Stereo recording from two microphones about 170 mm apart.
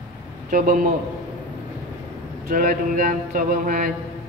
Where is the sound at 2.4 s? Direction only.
55° right (ahead or behind).